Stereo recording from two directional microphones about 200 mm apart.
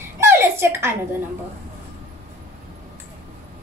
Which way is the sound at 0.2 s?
10° right (ahead or behind).